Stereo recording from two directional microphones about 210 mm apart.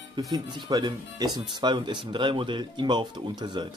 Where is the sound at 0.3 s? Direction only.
20° right (ahead or behind).